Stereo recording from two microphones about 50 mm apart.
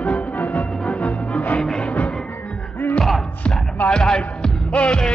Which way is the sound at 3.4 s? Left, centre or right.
Left.